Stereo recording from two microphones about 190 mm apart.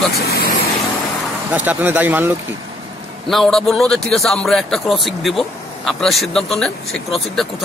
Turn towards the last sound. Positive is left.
turn(degrees=0)  # may be behind; listen again after turning